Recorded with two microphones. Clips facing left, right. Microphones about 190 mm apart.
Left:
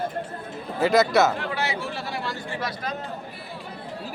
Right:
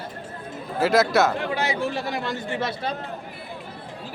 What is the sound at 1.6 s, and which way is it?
Chatter, 15° right (ahead or behind).